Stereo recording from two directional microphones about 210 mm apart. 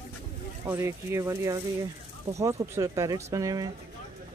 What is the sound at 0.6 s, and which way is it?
Speech, 10° right (ahead or behind).